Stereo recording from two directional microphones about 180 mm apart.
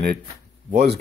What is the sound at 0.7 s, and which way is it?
Speech, 65° right (ahead or behind).